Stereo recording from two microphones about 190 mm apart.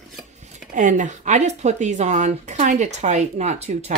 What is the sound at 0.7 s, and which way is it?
Speech, 40° right (ahead or behind).